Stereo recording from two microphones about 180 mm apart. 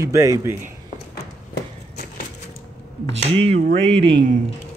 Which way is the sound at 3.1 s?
35° right (ahead or behind).